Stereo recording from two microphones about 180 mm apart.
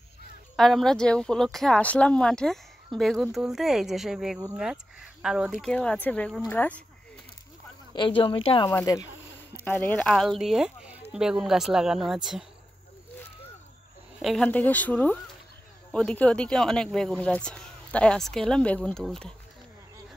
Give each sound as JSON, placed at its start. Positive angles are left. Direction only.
{"t": 0.6, "sound": "speech", "side_deg": 0}
{"t": 8.2, "sound": "speech", "side_deg": 30}
{"t": 9.7, "sound": "speech", "side_deg": 10}
{"t": 14.2, "sound": "speech", "side_deg": 5}